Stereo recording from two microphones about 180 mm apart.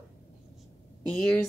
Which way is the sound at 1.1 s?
5° left (ahead or behind).